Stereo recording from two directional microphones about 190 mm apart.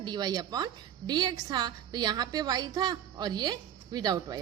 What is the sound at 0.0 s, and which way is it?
A woman's voice, 20° right (ahead or behind).